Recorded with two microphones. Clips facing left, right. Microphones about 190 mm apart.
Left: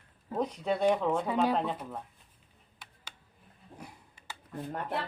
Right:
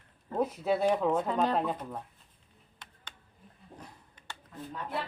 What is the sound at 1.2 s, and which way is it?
Speech, 10° left (ahead or behind).